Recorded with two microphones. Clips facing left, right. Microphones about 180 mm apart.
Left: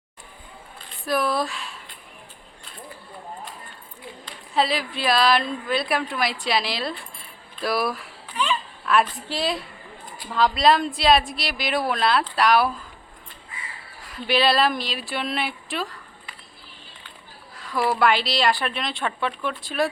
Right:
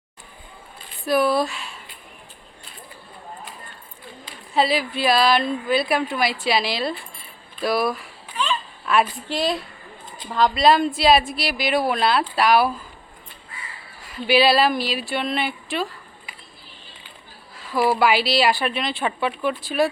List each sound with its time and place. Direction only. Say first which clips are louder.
1.0 s speech: right 4 dB; centre (ahead or behind)
4.3 s speech: right 3 dB; centre (ahead or behind)
7.6 s a sound: right 3 dB; centre (ahead or behind)
10.3 s speech: right 2 dB; centre (ahead or behind)
14.0 s speech: right 4 dB; 5° right (ahead or behind)
17.6 s speech: right 2 dB; 5° right (ahead or behind)